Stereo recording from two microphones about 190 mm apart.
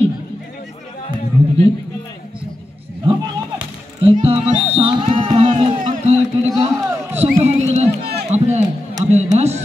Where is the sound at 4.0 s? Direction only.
30° right (ahead or behind).